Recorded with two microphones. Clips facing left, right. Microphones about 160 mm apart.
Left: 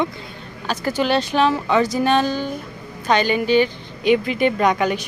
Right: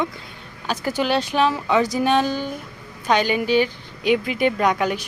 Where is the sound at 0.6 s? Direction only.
10° right (ahead or behind).